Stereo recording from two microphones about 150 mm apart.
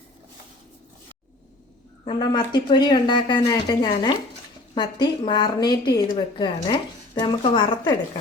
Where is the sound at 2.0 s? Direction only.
30° left (ahead or behind).